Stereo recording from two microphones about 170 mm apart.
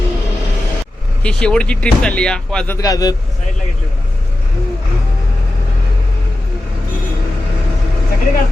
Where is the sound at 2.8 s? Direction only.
20° left (ahead or behind).